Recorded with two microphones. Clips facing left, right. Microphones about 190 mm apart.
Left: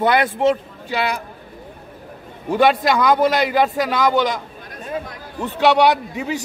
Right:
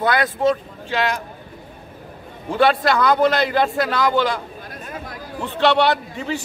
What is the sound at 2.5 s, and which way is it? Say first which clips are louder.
A man's voice: left 1 dB; 15° left (ahead or behind).